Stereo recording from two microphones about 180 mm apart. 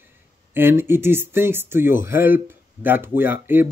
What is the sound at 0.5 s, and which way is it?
Speech, 10° right (ahead or behind).